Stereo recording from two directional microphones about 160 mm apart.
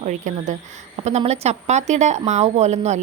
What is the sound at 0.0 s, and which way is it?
Speech, 50° right (ahead or behind).